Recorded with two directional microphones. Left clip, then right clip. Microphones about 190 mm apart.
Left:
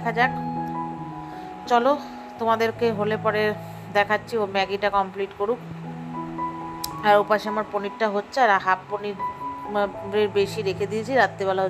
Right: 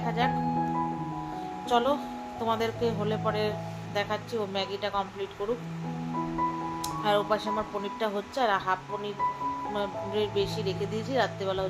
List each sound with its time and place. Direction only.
0.0 s speech: 25° left (ahead or behind)
0.3 s music: centre (ahead or behind)
1.7 s speech: 25° left (ahead or behind)
7.0 s speech: 25° left (ahead or behind)